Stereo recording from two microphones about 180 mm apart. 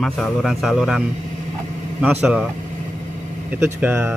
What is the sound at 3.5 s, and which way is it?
Speech, 10° right (ahead or behind).